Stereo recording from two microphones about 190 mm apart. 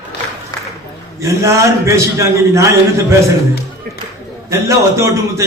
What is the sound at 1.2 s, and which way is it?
A man's voice, 15° right (ahead or behind).